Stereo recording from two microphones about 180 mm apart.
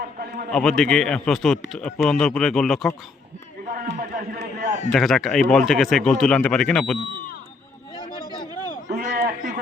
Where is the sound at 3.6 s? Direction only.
50° right (ahead or behind).